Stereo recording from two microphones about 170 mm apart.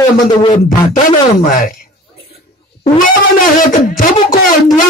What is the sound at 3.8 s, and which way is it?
Speech, 55° left (ahead or behind).